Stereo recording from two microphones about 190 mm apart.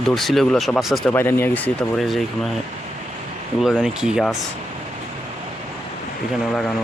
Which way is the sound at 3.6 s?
Centre (ahead or behind).